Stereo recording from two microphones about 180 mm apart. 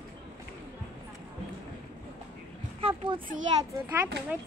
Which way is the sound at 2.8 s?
30° right (ahead or behind).